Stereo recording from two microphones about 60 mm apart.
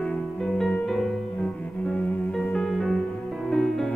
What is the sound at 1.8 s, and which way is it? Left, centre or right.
Music, left.